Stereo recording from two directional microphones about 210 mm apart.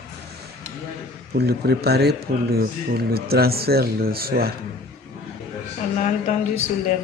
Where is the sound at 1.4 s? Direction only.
50° right (ahead or behind).